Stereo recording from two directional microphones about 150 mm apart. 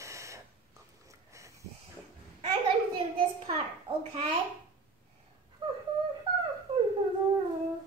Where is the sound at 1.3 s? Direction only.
20° right (ahead or behind).